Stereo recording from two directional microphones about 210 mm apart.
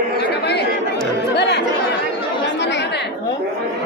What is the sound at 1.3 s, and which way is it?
Music, 55° left (ahead or behind).